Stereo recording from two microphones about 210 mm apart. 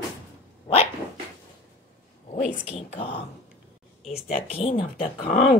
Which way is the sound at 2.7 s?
30° left (ahead or behind).